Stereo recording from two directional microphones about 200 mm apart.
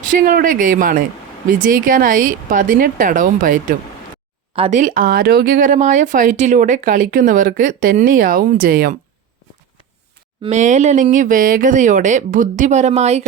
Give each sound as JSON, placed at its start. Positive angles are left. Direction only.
{"t": 0.1, "sound": "speech", "side_deg": -45}
{"t": 10.4, "sound": "speech", "side_deg": -35}